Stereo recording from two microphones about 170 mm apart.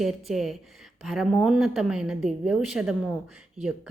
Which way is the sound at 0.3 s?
Centre (ahead or behind).